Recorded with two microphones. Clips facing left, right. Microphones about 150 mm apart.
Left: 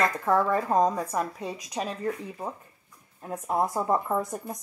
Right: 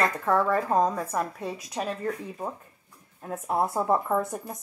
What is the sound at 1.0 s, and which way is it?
Speech, 5° right (ahead or behind).